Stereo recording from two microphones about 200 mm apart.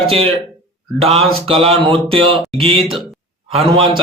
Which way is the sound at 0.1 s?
30° right (ahead or behind).